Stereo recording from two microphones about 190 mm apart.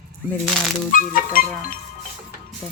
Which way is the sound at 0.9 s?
45° left (ahead or behind).